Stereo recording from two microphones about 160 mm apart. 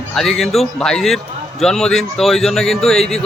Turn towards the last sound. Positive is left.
turn(degrees=5)  # may be behind; listen again after turning